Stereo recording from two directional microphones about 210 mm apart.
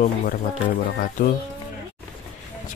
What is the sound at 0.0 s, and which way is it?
Speech, 40° left (ahead or behind).